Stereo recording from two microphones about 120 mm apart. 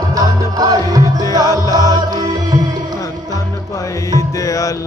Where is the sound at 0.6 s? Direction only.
30° right (ahead or behind).